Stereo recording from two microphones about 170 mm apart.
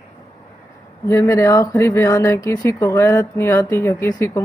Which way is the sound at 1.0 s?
15° left (ahead or behind).